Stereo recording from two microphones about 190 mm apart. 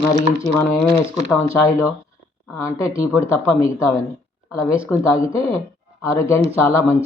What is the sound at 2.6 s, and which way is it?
Speech, 15° left (ahead or behind).